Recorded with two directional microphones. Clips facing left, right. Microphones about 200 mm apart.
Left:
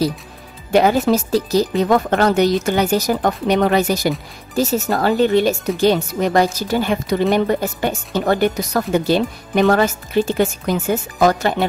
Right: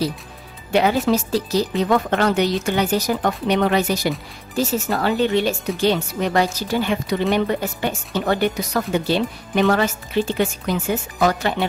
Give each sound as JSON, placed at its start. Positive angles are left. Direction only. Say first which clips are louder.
{"t": 0.7, "sound": "speech", "louder": "left 3 dB", "side_deg": 45}